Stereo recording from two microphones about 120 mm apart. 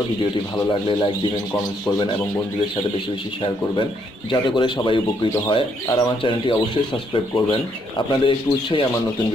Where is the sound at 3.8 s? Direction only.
45° left (ahead or behind).